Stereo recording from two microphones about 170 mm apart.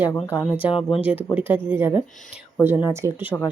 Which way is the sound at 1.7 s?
10° right (ahead or behind).